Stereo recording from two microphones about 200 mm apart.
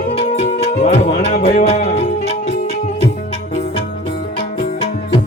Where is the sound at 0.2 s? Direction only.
30° left (ahead or behind).